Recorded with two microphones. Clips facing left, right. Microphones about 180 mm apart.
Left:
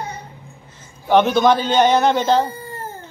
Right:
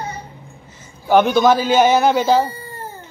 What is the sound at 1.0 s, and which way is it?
A man's voice, centre (ahead or behind).